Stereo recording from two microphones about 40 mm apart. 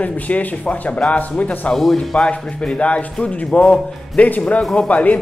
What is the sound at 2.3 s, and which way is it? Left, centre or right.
Speech, left.